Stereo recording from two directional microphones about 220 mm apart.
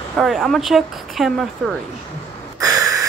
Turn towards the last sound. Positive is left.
turn(degrees=-15)  # may be behind; listen again after turning